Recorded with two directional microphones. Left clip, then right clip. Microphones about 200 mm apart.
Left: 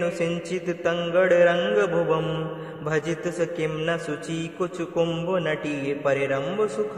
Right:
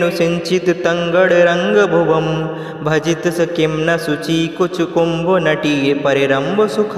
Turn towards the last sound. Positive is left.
turn(degrees=-35)  # may be behind; listen again after turning